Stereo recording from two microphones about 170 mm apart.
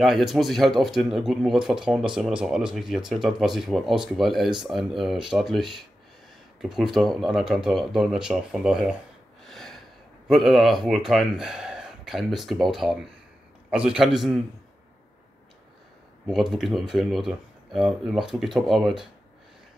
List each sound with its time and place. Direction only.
0.0 s speech: centre (ahead or behind)
9.5 s gasp: centre (ahead or behind)
10.9 s speech: centre (ahead or behind)
16.3 s speech: centre (ahead or behind)